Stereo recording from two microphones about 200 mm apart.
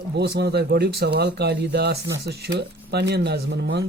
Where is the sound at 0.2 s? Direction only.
55° right (ahead or behind).